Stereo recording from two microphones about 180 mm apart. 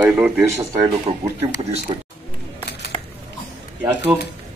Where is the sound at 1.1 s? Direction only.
35° right (ahead or behind).